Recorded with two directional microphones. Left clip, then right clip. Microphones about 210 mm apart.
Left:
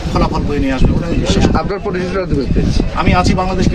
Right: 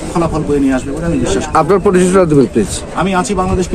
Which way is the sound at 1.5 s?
55° right (ahead or behind).